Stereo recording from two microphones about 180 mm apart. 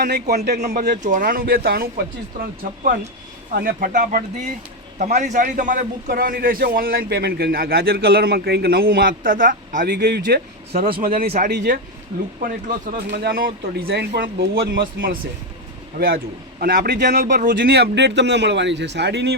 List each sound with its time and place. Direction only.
0.0 s a man's voice: 65° right (ahead or behind)
0.8 s a man's voice: 45° right (ahead or behind)
9.9 s speech: 70° right (ahead or behind)
10.9 s speech: 50° right (ahead or behind)
11.3 s a man's voice: 65° right (ahead or behind)
12.4 s speech: 50° right (ahead or behind)
13.1 s a man's voice: 60° right (ahead or behind)